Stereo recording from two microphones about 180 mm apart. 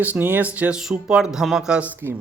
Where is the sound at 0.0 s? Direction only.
10° right (ahead or behind).